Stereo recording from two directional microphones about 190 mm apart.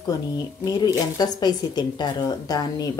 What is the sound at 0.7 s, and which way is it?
Speech, 20° left (ahead or behind).